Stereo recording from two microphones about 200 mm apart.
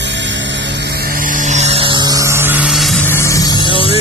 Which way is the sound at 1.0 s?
45° right (ahead or behind).